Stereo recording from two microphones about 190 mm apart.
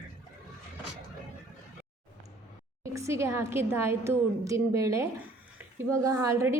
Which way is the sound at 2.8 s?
15° right (ahead or behind).